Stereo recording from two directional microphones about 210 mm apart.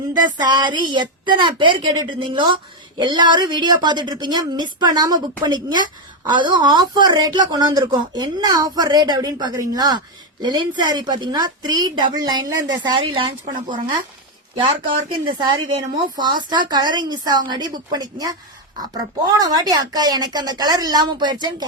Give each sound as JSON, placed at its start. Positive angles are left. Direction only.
{"t": 0.1, "sound": "a woman's voice", "side_deg": -20}
{"t": 15.3, "sound": "a woman's voice", "side_deg": -20}